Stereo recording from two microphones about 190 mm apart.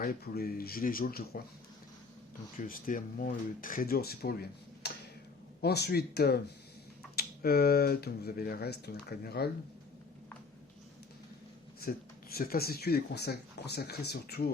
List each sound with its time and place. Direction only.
0.0 s speech: 50° left (ahead or behind)
2.6 s speech: 45° left (ahead or behind)
11.8 s speech: 50° left (ahead or behind)